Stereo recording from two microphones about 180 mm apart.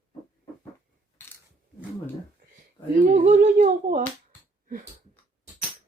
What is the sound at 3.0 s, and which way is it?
Speech, 45° right (ahead or behind).